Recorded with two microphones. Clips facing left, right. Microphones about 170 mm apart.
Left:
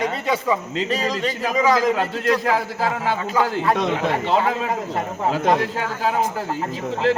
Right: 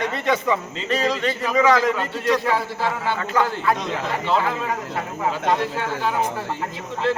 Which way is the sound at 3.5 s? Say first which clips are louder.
Left 3 dB; 70° left (ahead or behind).